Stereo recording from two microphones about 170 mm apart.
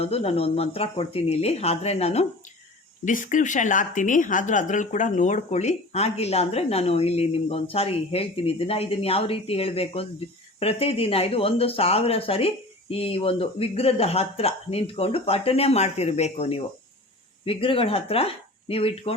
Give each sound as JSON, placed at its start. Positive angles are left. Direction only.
{"t": 0.0, "sound": "a woman's voice", "side_deg": 35}
{"t": 3.0, "sound": "a woman's voice", "side_deg": 50}